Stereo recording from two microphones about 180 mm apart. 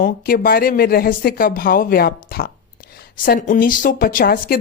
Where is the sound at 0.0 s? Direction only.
55° left (ahead or behind).